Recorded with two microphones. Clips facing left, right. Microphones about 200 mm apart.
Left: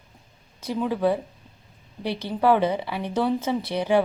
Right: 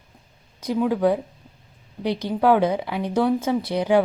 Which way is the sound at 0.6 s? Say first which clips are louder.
Right 3 dB; 15° right (ahead or behind).